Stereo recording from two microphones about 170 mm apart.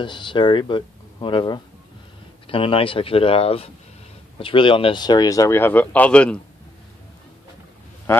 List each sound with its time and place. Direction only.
0.0 s speech: 30° left (ahead or behind); by 6.4 s 5° left (ahead or behind)
8.1 s speech: 15° left (ahead or behind)